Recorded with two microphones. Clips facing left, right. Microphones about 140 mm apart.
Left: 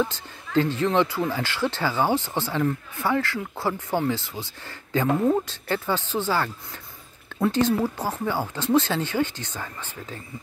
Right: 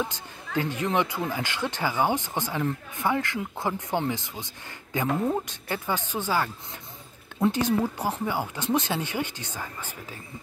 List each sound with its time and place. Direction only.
0.1 s speech: 15° right (ahead or behind)